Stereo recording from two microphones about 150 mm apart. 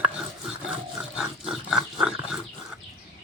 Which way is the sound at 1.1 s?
5° right (ahead or behind).